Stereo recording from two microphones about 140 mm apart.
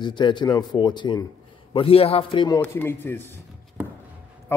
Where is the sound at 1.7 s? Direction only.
45° left (ahead or behind).